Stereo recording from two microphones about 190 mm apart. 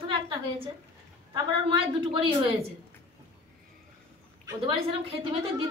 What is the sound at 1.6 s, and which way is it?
Speech, 25° right (ahead or behind).